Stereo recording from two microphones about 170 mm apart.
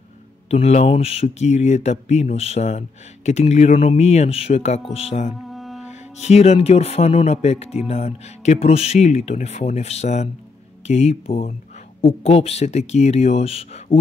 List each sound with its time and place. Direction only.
0.5 s speech: 40° left (ahead or behind)
5.5 s music: centre (ahead or behind)
5.9 s speech: 40° left (ahead or behind)